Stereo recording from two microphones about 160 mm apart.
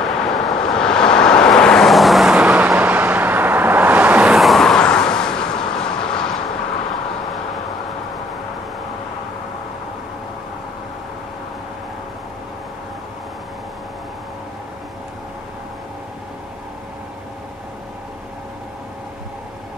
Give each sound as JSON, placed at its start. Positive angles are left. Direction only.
{"t": 0.0, "sound": "vehicle", "side_deg": 0}